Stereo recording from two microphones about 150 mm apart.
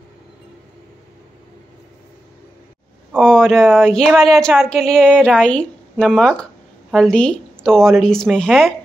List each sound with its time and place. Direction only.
3.2 s a woman's voice: 5° left (ahead or behind)